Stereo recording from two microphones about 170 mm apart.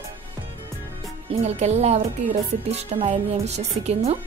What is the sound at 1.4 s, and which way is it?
Speech, 40° right (ahead or behind).